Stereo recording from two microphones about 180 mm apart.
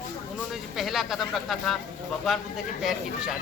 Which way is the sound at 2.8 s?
Centre (ahead or behind).